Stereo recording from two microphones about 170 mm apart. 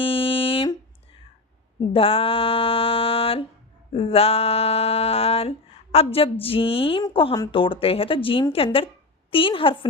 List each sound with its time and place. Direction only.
0.0 s humming: 30° left (ahead or behind)
1.9 s a sound: 35° left (ahead or behind)
3.9 s speech: 35° left (ahead or behind)